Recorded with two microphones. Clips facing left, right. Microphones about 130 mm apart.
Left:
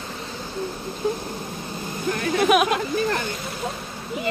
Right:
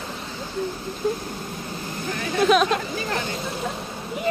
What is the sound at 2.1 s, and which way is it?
Speech, 60° left (ahead or behind).